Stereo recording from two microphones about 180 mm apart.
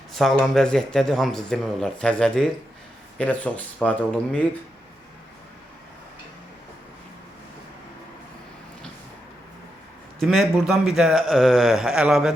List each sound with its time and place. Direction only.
0.2 s speech: centre (ahead or behind)
10.2 s speech: centre (ahead or behind)